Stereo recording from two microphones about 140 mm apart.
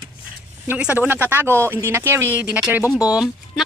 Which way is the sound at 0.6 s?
10° right (ahead or behind).